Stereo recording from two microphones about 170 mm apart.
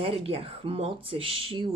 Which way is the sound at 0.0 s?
35° right (ahead or behind).